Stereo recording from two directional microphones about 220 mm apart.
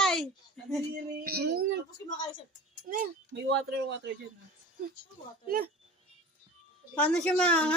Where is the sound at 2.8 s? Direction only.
40° right (ahead or behind).